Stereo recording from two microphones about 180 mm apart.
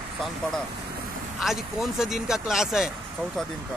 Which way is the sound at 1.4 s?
Centre (ahead or behind).